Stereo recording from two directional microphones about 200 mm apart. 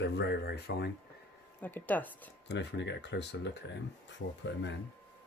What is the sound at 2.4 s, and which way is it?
Speech, 60° left (ahead or behind).